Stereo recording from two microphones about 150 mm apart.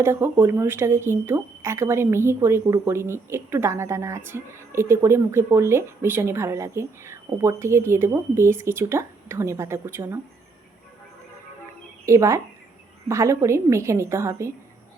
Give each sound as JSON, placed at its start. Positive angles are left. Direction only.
{"t": 0.0, "sound": "speech", "side_deg": -15}
{"t": 12.0, "sound": "a woman's voice", "side_deg": -20}